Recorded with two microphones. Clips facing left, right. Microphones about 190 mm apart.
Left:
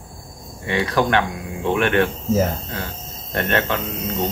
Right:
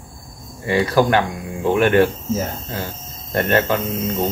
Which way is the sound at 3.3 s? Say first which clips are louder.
Right 4 dB; centre (ahead or behind).